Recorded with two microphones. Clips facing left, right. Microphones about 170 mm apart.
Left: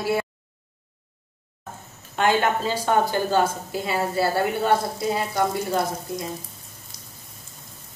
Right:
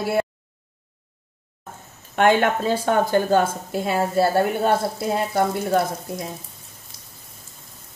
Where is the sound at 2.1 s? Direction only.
60° right (ahead or behind).